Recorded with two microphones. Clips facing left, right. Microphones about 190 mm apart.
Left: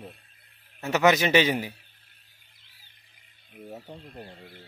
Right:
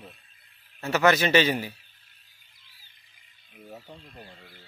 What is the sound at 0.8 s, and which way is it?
Speech, 15° left (ahead or behind).